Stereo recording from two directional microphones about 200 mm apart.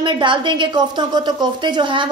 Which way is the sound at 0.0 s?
25° right (ahead or behind).